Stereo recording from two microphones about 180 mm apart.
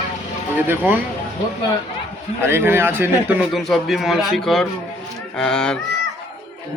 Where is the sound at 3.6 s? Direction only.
Centre (ahead or behind).